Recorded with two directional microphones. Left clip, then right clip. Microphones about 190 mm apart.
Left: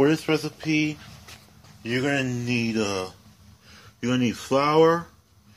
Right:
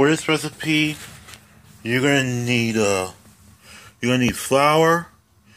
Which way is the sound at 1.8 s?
35° right (ahead or behind).